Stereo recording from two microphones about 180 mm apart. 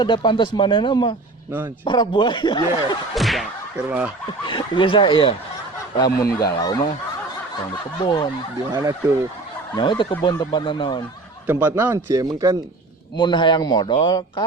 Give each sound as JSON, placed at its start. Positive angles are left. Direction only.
{"t": 0.0, "sound": "a man's voice", "side_deg": 25}
{"t": 3.2, "sound": "whip", "side_deg": 0}
{"t": 3.8, "sound": "a man's voice", "side_deg": -10}
{"t": 4.4, "sound": "a man's voice", "side_deg": 25}
{"t": 8.0, "sound": "a man's voice", "side_deg": 20}
{"t": 8.7, "sound": "speech", "side_deg": -20}
{"t": 9.7, "sound": "a man's voice", "side_deg": 25}
{"t": 11.4, "sound": "a man's voice", "side_deg": -10}
{"t": 13.1, "sound": "a man's voice", "side_deg": 25}